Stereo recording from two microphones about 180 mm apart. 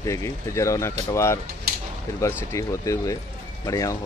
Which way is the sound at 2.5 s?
15° left (ahead or behind).